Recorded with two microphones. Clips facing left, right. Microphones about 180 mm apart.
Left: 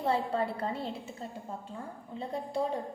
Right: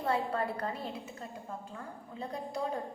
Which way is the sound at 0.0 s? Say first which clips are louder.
Left 2 dB; 25° left (ahead or behind).